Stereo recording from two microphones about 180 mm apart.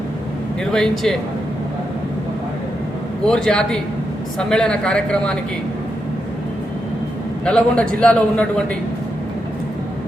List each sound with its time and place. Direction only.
0.6 s speech: 5° left (ahead or behind)
3.2 s speech: 5° left (ahead or behind)
7.4 s a man's voice: 5° left (ahead or behind)